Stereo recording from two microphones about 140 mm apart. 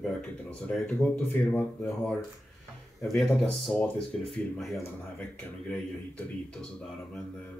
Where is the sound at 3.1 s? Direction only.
Centre (ahead or behind).